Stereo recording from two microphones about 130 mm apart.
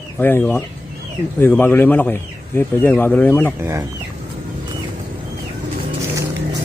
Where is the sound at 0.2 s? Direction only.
15° left (ahead or behind).